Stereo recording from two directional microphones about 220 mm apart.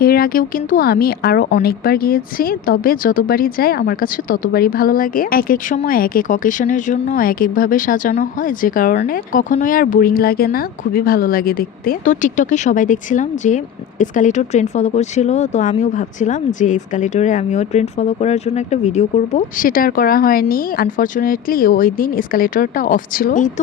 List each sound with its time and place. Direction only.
0.0 s a woman's voice: 45° left (ahead or behind)